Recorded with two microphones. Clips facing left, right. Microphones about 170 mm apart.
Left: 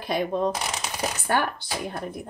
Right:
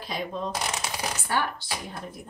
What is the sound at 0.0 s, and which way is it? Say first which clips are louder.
Speech: left 7 dB; 60° left (ahead or behind).